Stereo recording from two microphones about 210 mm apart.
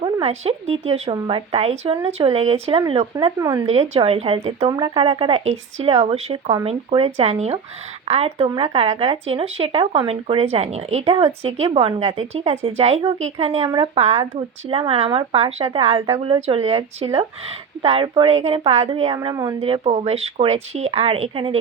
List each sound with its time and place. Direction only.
0.0 s speech: 30° right (ahead or behind)